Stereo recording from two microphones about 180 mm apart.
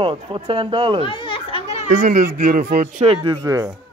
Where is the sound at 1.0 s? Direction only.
30° left (ahead or behind).